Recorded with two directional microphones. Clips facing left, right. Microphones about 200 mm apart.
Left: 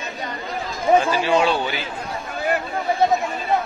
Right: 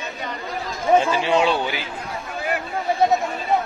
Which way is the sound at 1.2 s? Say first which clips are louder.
Even; 20° right (ahead or behind).